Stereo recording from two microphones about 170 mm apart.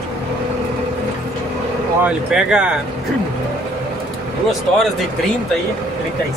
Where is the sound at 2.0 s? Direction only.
5° right (ahead or behind).